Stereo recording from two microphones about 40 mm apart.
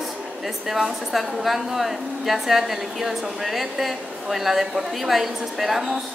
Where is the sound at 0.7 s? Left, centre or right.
Centre.